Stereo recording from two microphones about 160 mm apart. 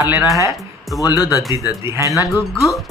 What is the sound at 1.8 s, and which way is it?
Speech, 15° right (ahead or behind).